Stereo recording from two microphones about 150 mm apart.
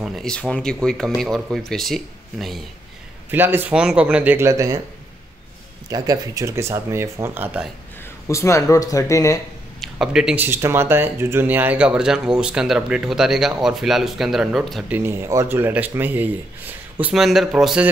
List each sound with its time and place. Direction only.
0.0 s speech: centre (ahead or behind)
3.3 s speech: 15° right (ahead or behind)
5.9 s speech: 25° right (ahead or behind)
8.0 s speech: 20° left (ahead or behind)
9.8 s speech: 5° right (ahead or behind)
14.9 s speech: 15° right (ahead or behind)